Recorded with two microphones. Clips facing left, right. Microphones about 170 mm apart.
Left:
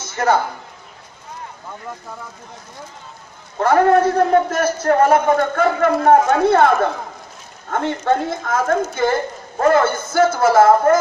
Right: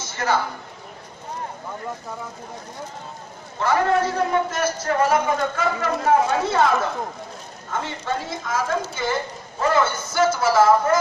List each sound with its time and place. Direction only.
3.6 s a man's voice: 50° left (ahead or behind)